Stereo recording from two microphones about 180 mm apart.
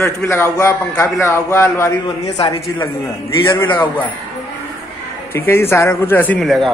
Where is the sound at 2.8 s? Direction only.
15° left (ahead or behind).